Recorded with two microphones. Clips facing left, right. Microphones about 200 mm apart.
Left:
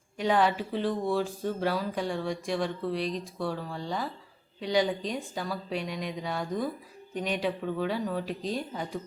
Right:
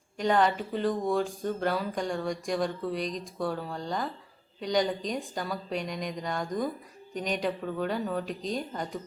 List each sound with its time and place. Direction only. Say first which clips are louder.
0.2 s speech: even; 5° left (ahead or behind)